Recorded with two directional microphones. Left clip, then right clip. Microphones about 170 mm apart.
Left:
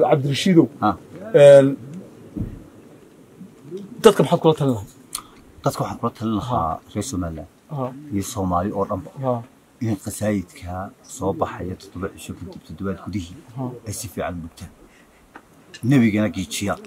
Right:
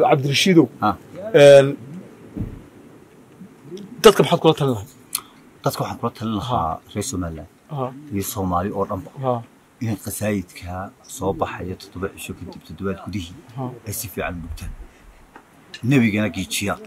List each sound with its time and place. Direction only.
0.0 s speech: 10° right (ahead or behind)
3.7 s speech: 10° right (ahead or behind)
5.1 s speech: centre (ahead or behind)
9.8 s speech: centre (ahead or behind)
15.9 s speech: centre (ahead or behind)